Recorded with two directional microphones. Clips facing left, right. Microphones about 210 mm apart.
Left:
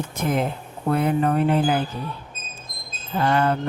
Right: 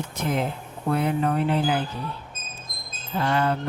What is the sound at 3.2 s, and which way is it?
Speech, 50° left (ahead or behind).